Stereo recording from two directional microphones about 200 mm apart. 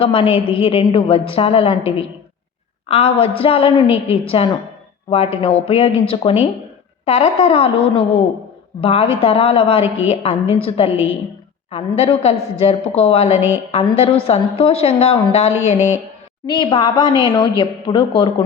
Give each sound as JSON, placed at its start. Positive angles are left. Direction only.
{"t": 0.0, "sound": "a woman's voice", "side_deg": 25}